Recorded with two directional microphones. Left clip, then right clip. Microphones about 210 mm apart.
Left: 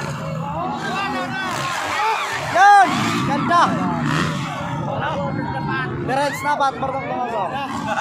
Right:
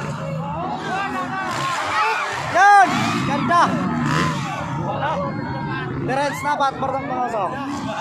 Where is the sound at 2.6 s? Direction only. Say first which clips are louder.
Left 1 dB; 5° right (ahead or behind).